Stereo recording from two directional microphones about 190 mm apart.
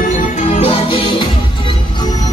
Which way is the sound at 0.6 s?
30° left (ahead or behind).